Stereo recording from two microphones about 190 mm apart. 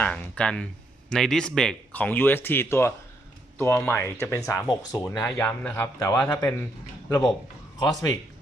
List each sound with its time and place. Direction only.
0.0 s speech: 5° left (ahead or behind)
7.8 s speech: 20° left (ahead or behind)